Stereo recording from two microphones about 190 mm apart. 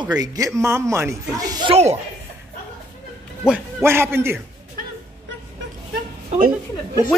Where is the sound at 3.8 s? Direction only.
10° right (ahead or behind).